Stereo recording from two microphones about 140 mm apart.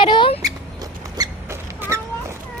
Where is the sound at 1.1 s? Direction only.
25° right (ahead or behind).